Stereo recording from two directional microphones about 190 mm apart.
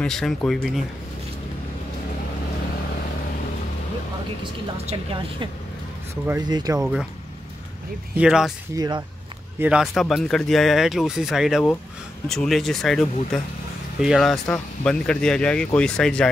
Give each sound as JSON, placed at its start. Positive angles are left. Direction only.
{"t": 0.0, "sound": "speech", "side_deg": 0}
{"t": 4.8, "sound": "a woman's voice", "side_deg": -25}
{"t": 8.2, "sound": "speech", "side_deg": -5}
{"t": 8.7, "sound": "a woman's voice", "side_deg": -20}
{"t": 9.6, "sound": "speech", "side_deg": -5}